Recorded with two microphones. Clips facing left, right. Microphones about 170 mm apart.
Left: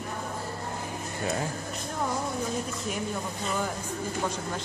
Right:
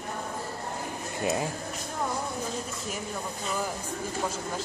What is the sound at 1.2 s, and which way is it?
Speech, 15° right (ahead or behind).